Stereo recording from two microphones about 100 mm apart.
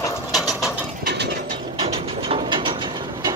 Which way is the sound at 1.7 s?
70° right (ahead or behind).